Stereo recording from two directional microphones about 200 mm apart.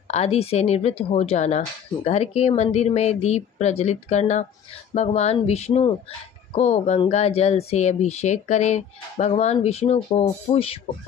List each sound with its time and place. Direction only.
0.1 s speech: 30° left (ahead or behind)